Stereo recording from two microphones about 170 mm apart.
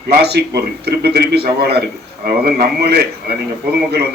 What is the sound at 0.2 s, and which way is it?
A man's voice, 75° right (ahead or behind).